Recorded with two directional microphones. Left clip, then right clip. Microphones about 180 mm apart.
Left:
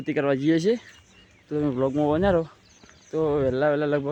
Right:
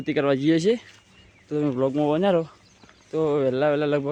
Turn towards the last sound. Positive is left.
turn(degrees=-5)  # may be behind; listen again after turning